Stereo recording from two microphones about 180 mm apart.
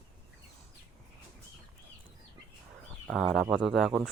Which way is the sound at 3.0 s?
Centre (ahead or behind).